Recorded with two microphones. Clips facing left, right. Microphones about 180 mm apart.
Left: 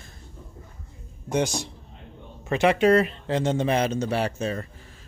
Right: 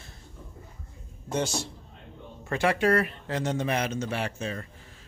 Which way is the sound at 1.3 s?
15° left (ahead or behind).